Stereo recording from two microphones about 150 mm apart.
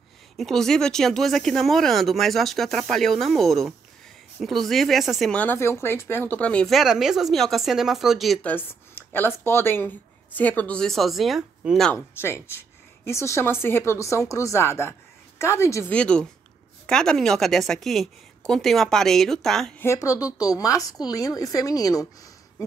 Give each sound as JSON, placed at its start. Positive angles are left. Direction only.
{"t": 0.4, "sound": "speech", "side_deg": 0}
{"t": 11.9, "sound": "speech", "side_deg": 15}
{"t": 19.8, "sound": "a woman's voice", "side_deg": 20}